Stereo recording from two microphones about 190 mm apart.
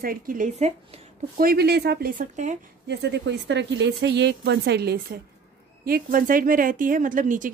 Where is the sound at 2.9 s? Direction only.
60° right (ahead or behind).